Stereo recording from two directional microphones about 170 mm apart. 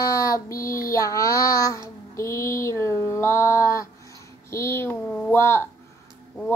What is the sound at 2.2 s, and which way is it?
Mantra, 15° left (ahead or behind).